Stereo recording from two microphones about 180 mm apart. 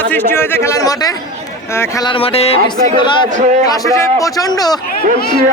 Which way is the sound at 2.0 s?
30° left (ahead or behind).